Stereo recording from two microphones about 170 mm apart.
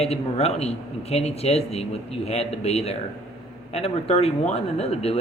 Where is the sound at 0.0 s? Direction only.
40° left (ahead or behind).